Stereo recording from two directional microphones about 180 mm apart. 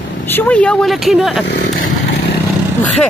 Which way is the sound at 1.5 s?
65° left (ahead or behind).